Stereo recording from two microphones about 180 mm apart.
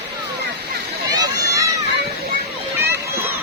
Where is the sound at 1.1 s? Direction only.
20° right (ahead or behind).